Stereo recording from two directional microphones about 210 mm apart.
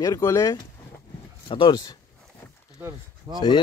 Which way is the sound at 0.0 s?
15° left (ahead or behind).